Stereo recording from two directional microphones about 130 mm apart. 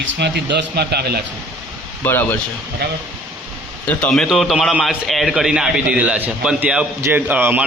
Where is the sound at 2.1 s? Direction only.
15° left (ahead or behind).